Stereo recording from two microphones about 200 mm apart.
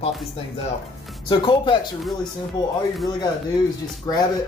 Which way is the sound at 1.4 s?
25° left (ahead or behind).